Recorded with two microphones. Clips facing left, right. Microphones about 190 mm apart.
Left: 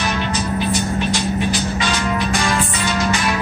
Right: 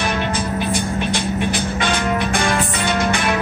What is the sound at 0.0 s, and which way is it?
Music, 55° right (ahead or behind).